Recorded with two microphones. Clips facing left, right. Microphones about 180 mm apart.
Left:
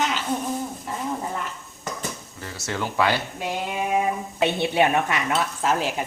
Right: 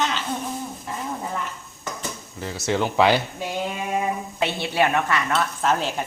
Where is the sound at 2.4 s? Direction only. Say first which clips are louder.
Right 6 dB; 20° right (ahead or behind).